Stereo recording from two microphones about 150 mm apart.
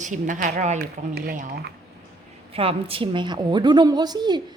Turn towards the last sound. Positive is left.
turn(degrees=-30)  # may be behind; listen again after turning